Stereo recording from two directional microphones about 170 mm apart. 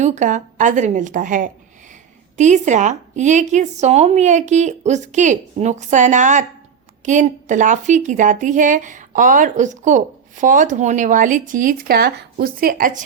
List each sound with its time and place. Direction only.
0.0 s a woman's voice: 45° right (ahead or behind)